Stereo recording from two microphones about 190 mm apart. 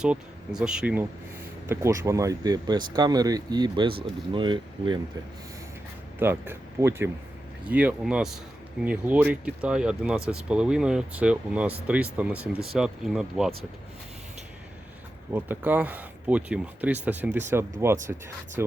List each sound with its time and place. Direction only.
0.0 s speech: 5° right (ahead or behind); by 4.9 s 25° right (ahead or behind)
6.1 s speech: 10° right (ahead or behind)
15.3 s speech: 10° right (ahead or behind)